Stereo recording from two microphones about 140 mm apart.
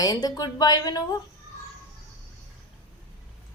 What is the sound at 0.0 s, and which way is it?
A woman's voice, 25° left (ahead or behind).